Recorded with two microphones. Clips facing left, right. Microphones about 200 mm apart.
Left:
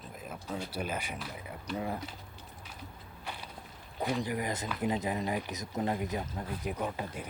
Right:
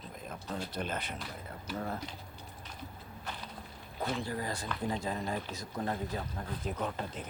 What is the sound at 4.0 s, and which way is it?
Speech, 15° left (ahead or behind).